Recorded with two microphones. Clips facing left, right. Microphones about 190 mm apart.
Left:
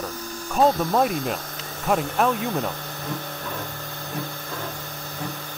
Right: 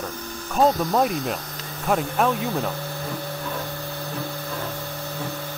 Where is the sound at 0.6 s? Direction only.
Centre (ahead or behind).